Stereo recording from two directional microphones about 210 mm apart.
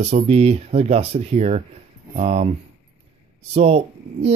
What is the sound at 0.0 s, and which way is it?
Speech, 30° right (ahead or behind).